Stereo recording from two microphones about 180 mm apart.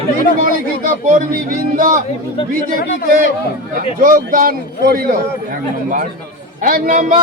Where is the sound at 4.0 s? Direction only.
50° right (ahead or behind).